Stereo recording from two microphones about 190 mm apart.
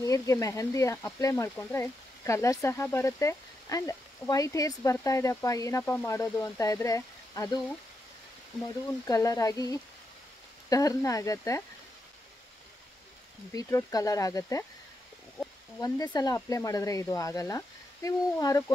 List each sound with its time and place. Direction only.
0.0 s speech: 15° left (ahead or behind)
8.6 s speech: 20° left (ahead or behind)
13.5 s speech: 15° left (ahead or behind)
15.8 s speech: 20° left (ahead or behind)